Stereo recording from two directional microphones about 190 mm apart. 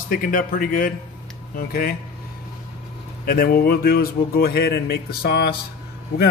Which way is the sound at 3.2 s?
50° left (ahead or behind).